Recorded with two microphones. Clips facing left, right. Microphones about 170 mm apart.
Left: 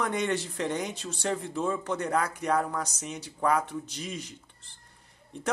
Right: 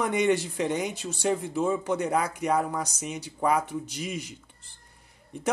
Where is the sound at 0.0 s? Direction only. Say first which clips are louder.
Right 5 dB; 10° right (ahead or behind).